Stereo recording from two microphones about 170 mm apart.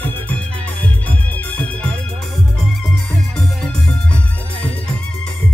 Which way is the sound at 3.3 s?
5° left (ahead or behind).